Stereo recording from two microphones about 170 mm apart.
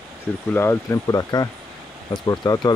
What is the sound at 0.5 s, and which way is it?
Speech, 15° left (ahead or behind).